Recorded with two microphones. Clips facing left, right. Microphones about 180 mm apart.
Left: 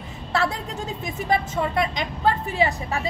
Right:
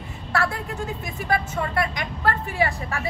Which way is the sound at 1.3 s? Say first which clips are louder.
Left 2 dB; 20° left (ahead or behind).